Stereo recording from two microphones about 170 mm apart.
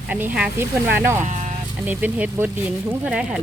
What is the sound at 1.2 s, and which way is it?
Speech, 45° right (ahead or behind).